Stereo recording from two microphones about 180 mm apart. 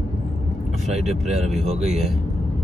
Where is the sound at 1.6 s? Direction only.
35° right (ahead or behind).